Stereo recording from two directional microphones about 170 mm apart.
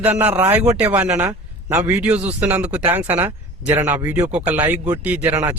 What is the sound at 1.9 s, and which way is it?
Speech, 5° right (ahead or behind).